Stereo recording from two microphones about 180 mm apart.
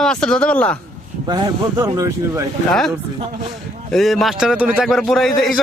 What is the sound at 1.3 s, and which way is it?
Speech, 20° right (ahead or behind).